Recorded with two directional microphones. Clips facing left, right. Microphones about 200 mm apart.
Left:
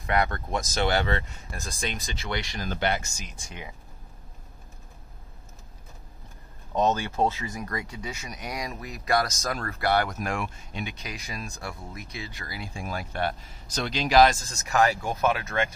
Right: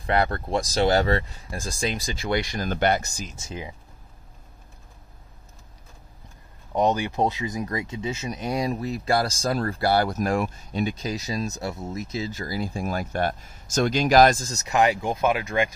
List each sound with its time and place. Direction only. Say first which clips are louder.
0.0 s speech: right 3 dB; 30° right (ahead or behind)
2.2 s speech: right 7 dB; 45° right (ahead or behind)
3.3 s speech: right 6 dB; 25° right (ahead or behind)
6.7 s speech: right 2 dB; 15° right (ahead or behind); by 11.2 s 40° right (ahead or behind)
11.2 s speech: right 8 dB; 25° right (ahead or behind)
12.4 s speech: right 8 dB; 40° right (ahead or behind)
14.7 s speech: right 2 dB; 20° right (ahead or behind)